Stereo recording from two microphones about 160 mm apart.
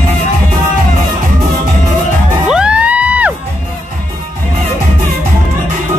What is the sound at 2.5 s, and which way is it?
Crowd, 5° right (ahead or behind).